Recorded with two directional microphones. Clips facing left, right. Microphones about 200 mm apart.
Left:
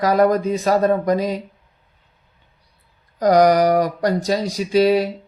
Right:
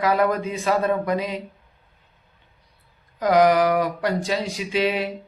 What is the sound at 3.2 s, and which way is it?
Speech, 40° left (ahead or behind).